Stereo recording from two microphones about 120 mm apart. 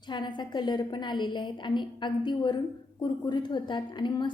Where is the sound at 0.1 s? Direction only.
40° left (ahead or behind).